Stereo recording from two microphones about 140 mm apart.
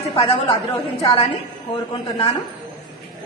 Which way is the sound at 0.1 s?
35° left (ahead or behind).